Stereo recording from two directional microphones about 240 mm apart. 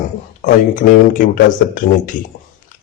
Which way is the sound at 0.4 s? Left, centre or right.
Left.